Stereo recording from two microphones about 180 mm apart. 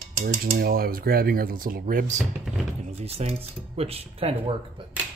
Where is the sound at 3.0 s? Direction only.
35° right (ahead or behind).